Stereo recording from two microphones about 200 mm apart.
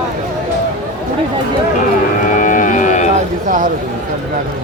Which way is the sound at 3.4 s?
40° right (ahead or behind).